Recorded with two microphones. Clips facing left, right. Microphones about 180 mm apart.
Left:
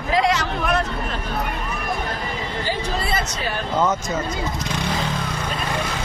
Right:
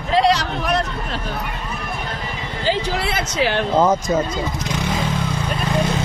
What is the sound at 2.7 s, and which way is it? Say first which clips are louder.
Speech: right 5 dB; 85° right.